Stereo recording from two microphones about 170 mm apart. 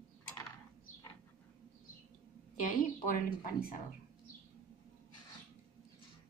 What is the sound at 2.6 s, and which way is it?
Speech, 55° left (ahead or behind).